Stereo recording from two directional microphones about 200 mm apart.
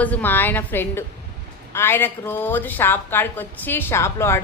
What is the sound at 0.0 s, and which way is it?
A woman's voice, 10° left (ahead or behind).